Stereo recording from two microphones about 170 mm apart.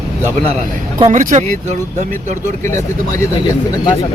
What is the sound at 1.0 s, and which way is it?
Speech, 45° right (ahead or behind).